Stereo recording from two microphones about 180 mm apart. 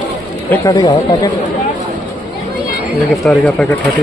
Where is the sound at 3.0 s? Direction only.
Centre (ahead or behind).